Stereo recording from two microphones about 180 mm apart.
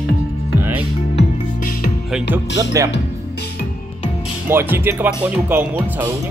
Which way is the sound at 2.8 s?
20° right (ahead or behind).